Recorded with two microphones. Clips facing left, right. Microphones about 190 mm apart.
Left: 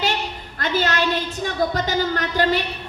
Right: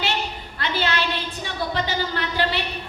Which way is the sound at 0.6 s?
45° left (ahead or behind).